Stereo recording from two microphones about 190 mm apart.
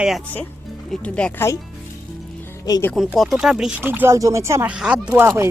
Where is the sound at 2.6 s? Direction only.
15° left (ahead or behind).